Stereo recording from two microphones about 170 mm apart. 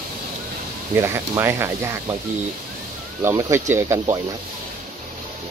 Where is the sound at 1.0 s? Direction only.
15° right (ahead or behind).